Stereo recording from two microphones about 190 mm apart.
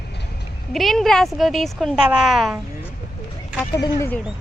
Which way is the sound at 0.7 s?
Centre (ahead or behind).